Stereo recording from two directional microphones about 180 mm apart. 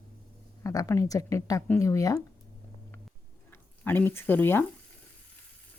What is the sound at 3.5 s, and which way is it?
Speech, 10° left (ahead or behind).